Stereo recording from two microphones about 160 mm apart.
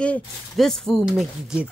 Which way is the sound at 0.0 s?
5° left (ahead or behind).